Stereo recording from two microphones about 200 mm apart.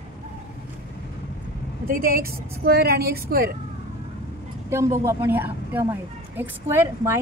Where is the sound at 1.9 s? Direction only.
45° right (ahead or behind).